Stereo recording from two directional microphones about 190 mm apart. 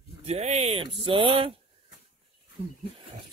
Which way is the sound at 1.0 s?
25° right (ahead or behind).